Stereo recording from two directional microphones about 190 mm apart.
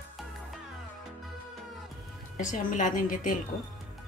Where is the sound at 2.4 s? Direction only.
45° left (ahead or behind).